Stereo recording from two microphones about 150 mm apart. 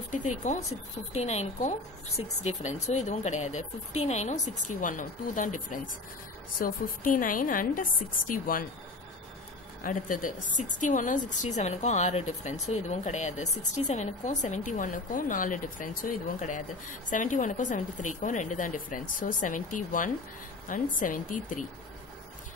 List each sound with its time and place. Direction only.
0.1 s a woman's voice: 55° left (ahead or behind); by 8.6 s 70° left (ahead or behind)
9.8 s a woman's voice: 65° left (ahead or behind)